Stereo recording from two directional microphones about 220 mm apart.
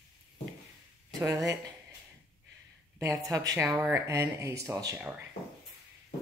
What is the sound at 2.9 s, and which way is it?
Speech, 15° right (ahead or behind).